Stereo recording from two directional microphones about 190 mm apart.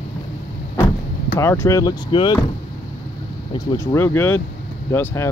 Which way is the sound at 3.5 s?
25° left (ahead or behind).